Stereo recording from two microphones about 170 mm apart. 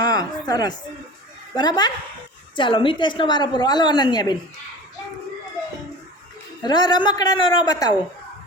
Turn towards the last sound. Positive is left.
turn(degrees=25)  # may be behind; listen again after turning